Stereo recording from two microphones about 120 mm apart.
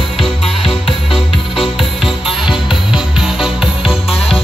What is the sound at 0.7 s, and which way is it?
Music, 45° left (ahead or behind).